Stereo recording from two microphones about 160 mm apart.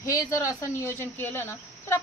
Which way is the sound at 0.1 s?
20° left (ahead or behind).